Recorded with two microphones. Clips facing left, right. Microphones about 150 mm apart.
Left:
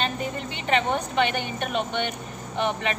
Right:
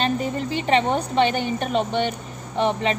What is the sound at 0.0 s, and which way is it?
A woman's voice, 35° right (ahead or behind).